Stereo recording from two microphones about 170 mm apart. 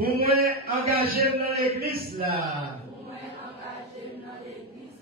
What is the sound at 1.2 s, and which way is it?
Speech, 35° right (ahead or behind).